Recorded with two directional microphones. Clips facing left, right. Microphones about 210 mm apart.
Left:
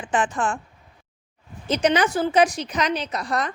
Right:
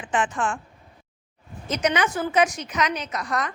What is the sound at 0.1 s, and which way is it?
Speech, 35° left (ahead or behind).